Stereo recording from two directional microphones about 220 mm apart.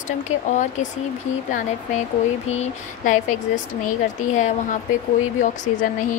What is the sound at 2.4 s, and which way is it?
Speech, 30° left (ahead or behind).